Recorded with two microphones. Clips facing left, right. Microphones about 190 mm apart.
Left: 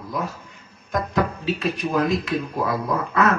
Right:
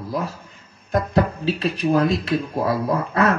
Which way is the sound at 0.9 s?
30° right (ahead or behind).